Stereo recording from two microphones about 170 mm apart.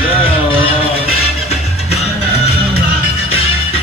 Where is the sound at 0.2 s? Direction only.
30° left (ahead or behind).